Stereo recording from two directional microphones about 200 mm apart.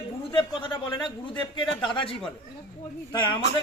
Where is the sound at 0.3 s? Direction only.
25° left (ahead or behind).